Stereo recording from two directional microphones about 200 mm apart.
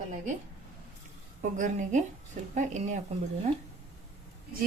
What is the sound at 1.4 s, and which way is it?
Speech, 40° right (ahead or behind).